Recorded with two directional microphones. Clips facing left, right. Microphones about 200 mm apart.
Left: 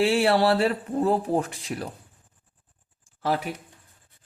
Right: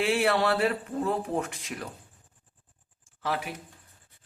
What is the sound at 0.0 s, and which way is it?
Speech, 30° left (ahead or behind).